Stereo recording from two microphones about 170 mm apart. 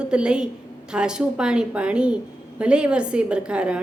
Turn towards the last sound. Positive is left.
turn(degrees=-5)  # may be behind; listen again after turning